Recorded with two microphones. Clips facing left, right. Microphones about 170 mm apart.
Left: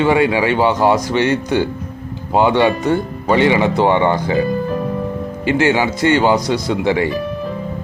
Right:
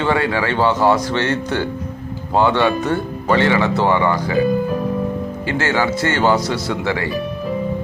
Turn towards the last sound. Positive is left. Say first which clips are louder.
# left 5 dB
turn(degrees=15)  # may be behind; listen again after turning